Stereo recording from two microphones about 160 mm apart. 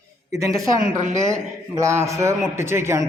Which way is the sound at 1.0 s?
45° right (ahead or behind).